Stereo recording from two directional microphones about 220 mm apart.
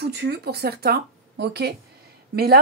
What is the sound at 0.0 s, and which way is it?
A woman's voice, 50° right (ahead or behind).